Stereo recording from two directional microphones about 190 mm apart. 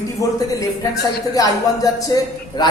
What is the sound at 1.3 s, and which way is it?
Speech, 20° left (ahead or behind).